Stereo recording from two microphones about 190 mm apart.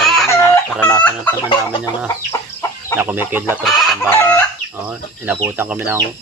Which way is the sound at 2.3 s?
15° left (ahead or behind).